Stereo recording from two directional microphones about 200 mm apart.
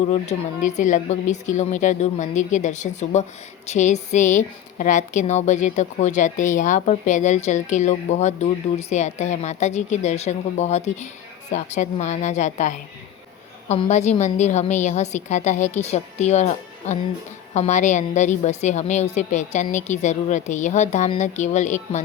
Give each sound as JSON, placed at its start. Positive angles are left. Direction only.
{"t": 0.1, "sound": "a woman's voice", "side_deg": 35}